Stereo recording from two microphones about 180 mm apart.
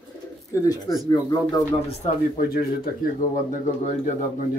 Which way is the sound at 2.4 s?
55° left (ahead or behind).